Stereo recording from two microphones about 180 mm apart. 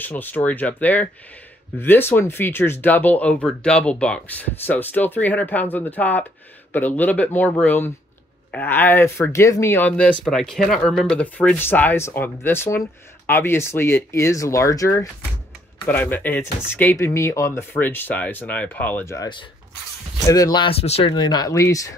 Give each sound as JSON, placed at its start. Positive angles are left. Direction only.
{"t": 0.0, "sound": "speech", "side_deg": 10}
{"t": 21.1, "sound": "speech", "side_deg": 25}